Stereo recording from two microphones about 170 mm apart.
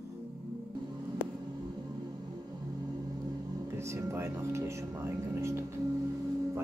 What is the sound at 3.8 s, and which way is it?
Speech, 15° right (ahead or behind).